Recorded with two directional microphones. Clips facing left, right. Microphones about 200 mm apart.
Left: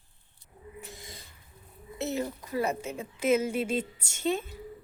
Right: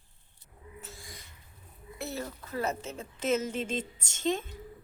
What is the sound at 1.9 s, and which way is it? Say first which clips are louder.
A woman's voice: left 6 dB; 20° left (ahead or behind).